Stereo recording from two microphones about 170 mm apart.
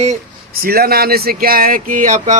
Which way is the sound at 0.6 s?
65° right (ahead or behind).